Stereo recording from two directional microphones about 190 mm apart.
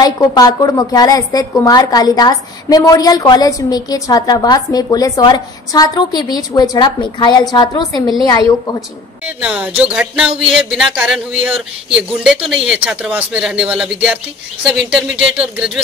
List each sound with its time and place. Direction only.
0.0 s a woman's voice: 20° left (ahead or behind)
9.4 s speech: 5° right (ahead or behind)